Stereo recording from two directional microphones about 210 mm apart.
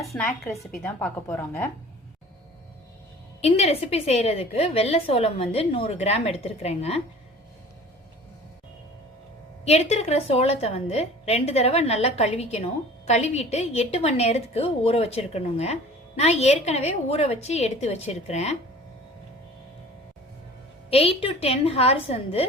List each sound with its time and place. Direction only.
0.0 s a woman's voice: 5° left (ahead or behind)
3.4 s a woman's voice: 30° left (ahead or behind)
9.6 s a woman's voice: 30° left (ahead or behind)
20.9 s a woman's voice: 25° left (ahead or behind)